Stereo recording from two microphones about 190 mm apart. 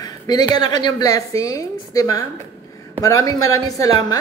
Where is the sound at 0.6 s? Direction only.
20° left (ahead or behind).